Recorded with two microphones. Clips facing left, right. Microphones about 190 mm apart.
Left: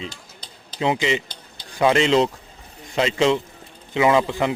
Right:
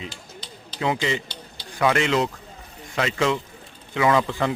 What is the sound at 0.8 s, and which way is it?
A man's voice, 20° left (ahead or behind).